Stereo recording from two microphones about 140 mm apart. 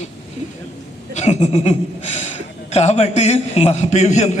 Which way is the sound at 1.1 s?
55° left (ahead or behind).